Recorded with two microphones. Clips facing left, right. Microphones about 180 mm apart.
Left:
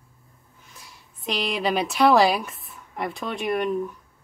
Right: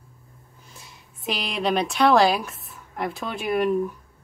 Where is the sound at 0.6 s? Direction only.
25° right (ahead or behind).